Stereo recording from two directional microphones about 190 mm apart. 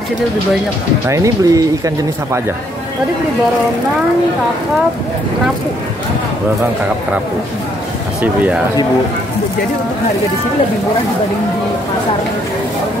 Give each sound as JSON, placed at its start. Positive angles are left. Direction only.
{"t": 1.0, "sound": "speech", "side_deg": -15}